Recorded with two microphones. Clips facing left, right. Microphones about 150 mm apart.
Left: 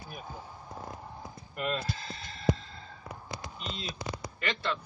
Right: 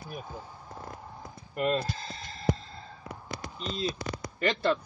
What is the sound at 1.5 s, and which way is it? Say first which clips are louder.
Speech: right 5 dB; 40° right (ahead or behind).